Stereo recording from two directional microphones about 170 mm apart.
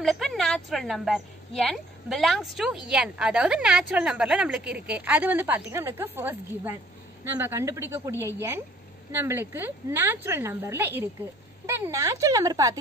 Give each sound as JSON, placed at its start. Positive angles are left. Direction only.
{"t": 0.0, "sound": "a woman's voice", "side_deg": 0}